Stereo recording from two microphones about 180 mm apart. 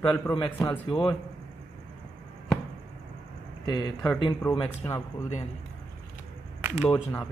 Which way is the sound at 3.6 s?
25° left (ahead or behind).